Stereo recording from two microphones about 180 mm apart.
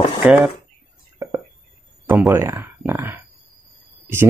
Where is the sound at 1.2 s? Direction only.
15° right (ahead or behind).